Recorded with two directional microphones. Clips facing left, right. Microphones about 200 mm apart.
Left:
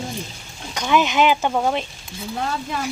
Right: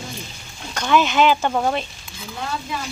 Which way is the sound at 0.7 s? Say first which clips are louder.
Right 1 dB; 15° left (ahead or behind).